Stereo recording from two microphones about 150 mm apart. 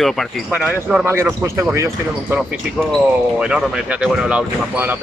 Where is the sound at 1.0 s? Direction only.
15° right (ahead or behind).